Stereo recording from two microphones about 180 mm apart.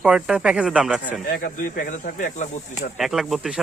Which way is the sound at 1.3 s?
50° left (ahead or behind).